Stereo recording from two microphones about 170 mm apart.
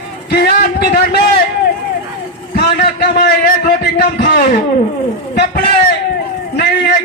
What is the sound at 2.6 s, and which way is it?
A man's voice, 65° left (ahead or behind).